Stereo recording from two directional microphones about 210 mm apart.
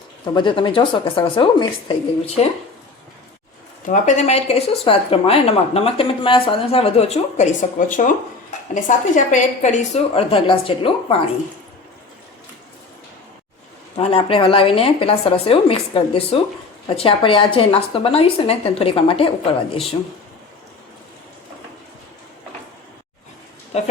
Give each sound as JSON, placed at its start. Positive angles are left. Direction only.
{"t": 0.3, "sound": "speech", "side_deg": 25}
{"t": 3.8, "sound": "a woman's voice", "side_deg": 35}
{"t": 13.9, "sound": "speech", "side_deg": 25}
{"t": 23.7, "sound": "speech", "side_deg": 30}